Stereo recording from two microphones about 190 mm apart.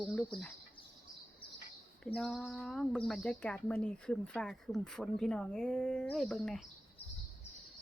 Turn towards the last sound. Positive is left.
turn(degrees=0)  # may be behind; listen again after turning